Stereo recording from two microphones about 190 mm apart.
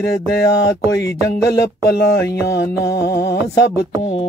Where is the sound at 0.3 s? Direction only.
60° left (ahead or behind).